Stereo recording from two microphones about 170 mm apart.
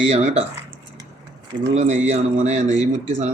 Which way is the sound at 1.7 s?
45° right (ahead or behind).